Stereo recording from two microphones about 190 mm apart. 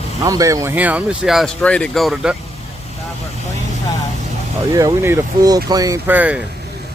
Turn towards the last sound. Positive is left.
turn(degrees=-10)  # may be behind; listen again after turning